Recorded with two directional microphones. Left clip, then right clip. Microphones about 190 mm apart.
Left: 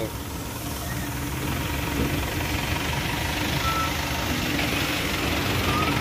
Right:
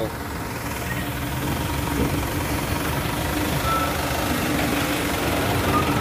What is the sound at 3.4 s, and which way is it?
Reversing beeps, 55° right (ahead or behind).